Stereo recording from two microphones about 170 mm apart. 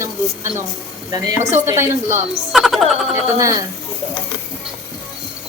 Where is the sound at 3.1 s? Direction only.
20° right (ahead or behind).